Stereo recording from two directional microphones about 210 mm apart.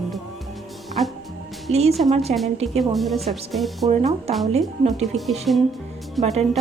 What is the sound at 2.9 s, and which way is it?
Speech, centre (ahead or behind).